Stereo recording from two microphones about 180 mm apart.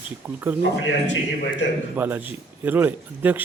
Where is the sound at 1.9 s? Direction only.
10° right (ahead or behind).